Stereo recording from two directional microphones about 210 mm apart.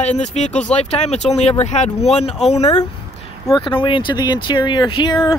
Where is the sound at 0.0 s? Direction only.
35° left (ahead or behind).